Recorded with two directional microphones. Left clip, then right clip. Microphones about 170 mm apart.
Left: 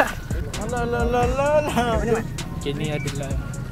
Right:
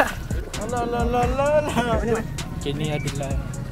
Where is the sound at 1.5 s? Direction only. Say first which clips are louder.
Left 1 dB; 35° left (ahead or behind).